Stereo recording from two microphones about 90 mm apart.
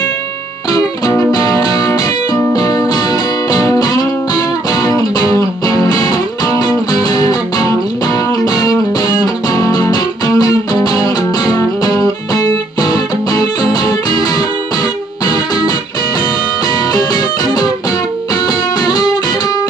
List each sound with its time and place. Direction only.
0.7 s music: 45° left (ahead or behind)